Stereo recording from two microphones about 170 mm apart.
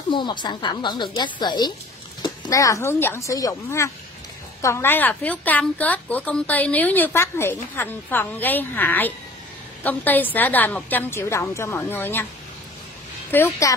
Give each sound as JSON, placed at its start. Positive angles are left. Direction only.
{"t": 0.1, "sound": "a woman's voice", "side_deg": 25}
{"t": 13.3, "sound": "a woman's voice", "side_deg": 15}